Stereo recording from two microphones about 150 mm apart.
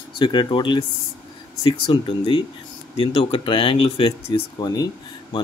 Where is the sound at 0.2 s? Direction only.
30° left (ahead or behind).